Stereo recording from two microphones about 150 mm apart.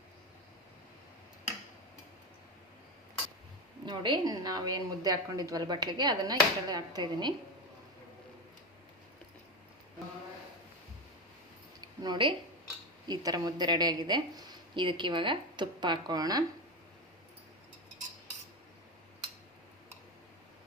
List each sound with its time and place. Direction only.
3.8 s a woman's voice: 30° right (ahead or behind)
12.0 s a woman's voice: 30° right (ahead or behind)